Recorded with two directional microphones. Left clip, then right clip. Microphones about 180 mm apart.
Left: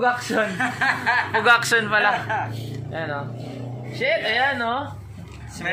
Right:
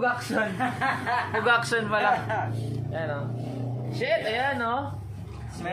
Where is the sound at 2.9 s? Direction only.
40° left (ahead or behind).